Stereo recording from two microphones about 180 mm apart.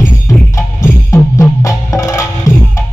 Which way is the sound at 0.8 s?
15° left (ahead or behind).